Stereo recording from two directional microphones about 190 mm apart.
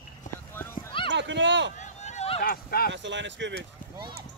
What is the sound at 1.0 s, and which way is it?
Speech, 70° right (ahead or behind).